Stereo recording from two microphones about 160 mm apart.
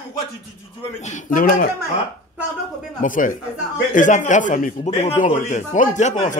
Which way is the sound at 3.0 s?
55° left (ahead or behind).